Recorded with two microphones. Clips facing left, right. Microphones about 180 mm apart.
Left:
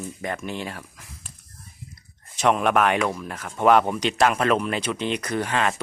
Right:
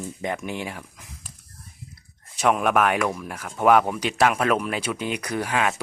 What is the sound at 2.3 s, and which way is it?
Speech, 5° right (ahead or behind).